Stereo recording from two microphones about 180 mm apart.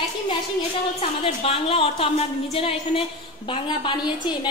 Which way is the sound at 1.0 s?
30° left (ahead or behind).